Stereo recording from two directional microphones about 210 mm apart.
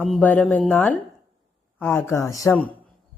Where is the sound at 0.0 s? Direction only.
5° left (ahead or behind).